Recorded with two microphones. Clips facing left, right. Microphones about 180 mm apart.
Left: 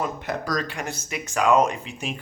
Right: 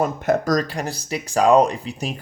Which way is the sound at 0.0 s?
45° right (ahead or behind).